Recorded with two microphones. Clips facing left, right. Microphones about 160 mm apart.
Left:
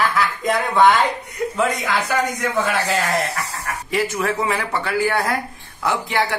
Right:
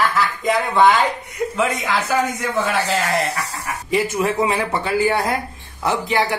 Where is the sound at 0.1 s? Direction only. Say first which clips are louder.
Right 1 dB; centre (ahead or behind).